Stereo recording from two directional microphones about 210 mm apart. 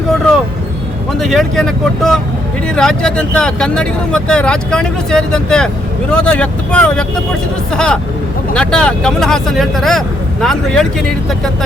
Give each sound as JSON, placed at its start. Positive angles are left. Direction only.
{"t": 1.2, "sound": "speech", "side_deg": 0}